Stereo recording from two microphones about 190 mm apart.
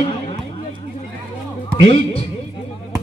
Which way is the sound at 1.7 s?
30° left (ahead or behind).